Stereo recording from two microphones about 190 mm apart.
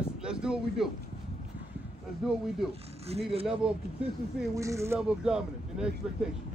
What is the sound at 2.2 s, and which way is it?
Speech, centre (ahead or behind).